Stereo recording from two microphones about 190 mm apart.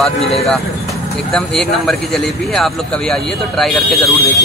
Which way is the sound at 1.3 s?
5° left (ahead or behind).